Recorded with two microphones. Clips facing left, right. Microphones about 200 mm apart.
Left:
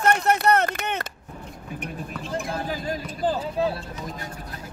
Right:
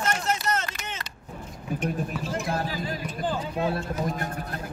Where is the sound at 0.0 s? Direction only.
60° left (ahead or behind).